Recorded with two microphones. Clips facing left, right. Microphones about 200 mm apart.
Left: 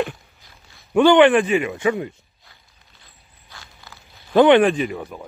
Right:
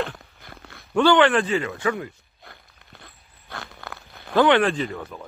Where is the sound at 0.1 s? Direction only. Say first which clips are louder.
Right 2 dB; 60° right (ahead or behind).